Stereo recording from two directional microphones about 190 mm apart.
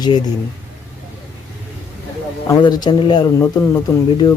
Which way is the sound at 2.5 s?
20° left (ahead or behind).